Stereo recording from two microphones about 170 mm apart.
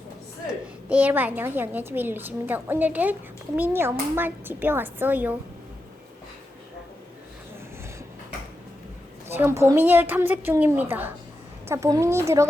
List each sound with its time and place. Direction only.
0.9 s a woman's voice: 10° right (ahead or behind)
9.3 s a woman's voice: 15° right (ahead or behind)